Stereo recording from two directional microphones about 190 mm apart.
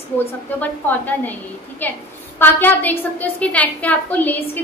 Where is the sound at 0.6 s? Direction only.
10° left (ahead or behind).